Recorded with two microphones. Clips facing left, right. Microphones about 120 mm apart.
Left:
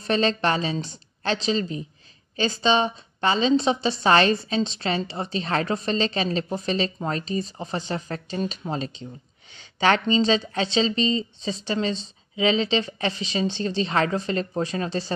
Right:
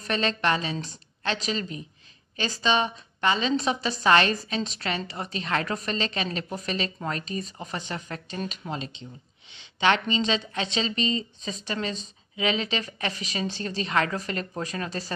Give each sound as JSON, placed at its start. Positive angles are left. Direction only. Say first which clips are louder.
{"t": 0.0, "sound": "a woman's voice", "louder": "left 4 dB", "side_deg": 30}